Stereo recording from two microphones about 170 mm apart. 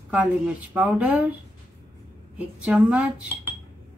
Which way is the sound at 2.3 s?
5° right (ahead or behind).